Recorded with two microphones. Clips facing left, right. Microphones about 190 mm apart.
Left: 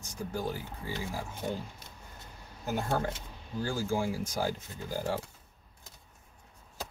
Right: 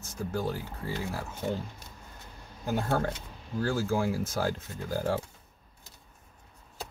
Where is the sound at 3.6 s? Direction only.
10° left (ahead or behind).